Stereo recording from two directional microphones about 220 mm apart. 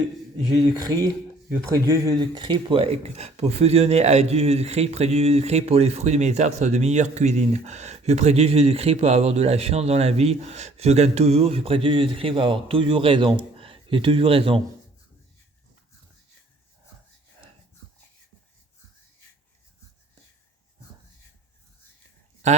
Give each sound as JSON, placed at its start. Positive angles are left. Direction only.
{"t": 0.8, "sound": "speech", "side_deg": -15}